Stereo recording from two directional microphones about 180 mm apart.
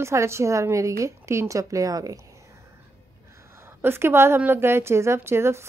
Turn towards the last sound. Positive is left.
turn(degrees=-15)  # may be behind; listen again after turning